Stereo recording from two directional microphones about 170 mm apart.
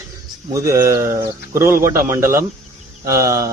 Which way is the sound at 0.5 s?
20° right (ahead or behind).